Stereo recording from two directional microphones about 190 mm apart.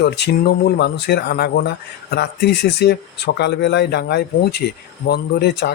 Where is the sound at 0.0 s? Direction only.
60° left (ahead or behind).